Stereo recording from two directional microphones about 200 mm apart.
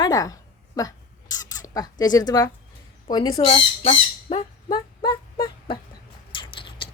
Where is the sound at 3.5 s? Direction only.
30° left (ahead or behind).